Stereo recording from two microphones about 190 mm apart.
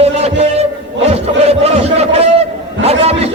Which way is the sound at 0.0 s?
35° right (ahead or behind).